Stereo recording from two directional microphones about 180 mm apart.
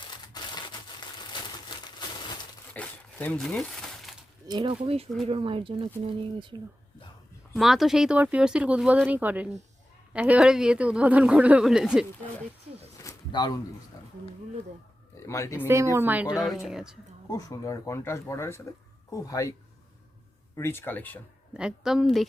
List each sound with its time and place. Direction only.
0.0 s a sound: 25° left (ahead or behind)
2.7 s crumpling: 10° left (ahead or behind)
4.4 s speech: 25° right (ahead or behind)
7.5 s a woman's voice: centre (ahead or behind)
13.0 s a sound: 20° left (ahead or behind)
15.3 s speech: 15° left (ahead or behind)
15.6 s a woman's voice: 15° right (ahead or behind)
17.2 s speech: 15° left (ahead or behind)
20.6 s speech: 15° left (ahead or behind)
21.5 s a woman's voice: 5° right (ahead or behind)